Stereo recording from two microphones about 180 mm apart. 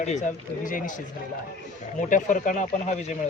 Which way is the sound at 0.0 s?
40° left (ahead or behind).